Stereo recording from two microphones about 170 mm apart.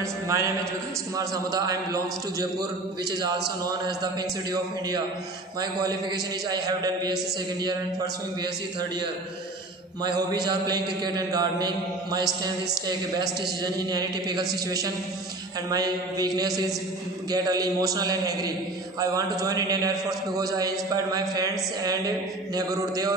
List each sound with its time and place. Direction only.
0.0 s a sound: 15° right (ahead or behind)
1.1 s mantra: 20° right (ahead or behind)
10.3 s mantra: 25° right (ahead or behind)
15.7 s mantra: 20° right (ahead or behind)